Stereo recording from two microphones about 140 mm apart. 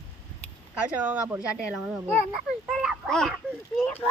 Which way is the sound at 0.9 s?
10° right (ahead or behind).